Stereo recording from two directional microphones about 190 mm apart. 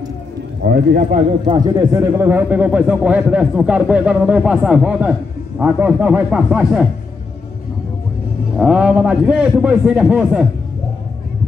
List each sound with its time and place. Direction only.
0.7 s a man's voice: 50° right (ahead or behind)
1.4 s a man's voice: 25° right (ahead or behind); by 6.9 s 5° right (ahead or behind)
8.5 s a man's voice: 5° right (ahead or behind)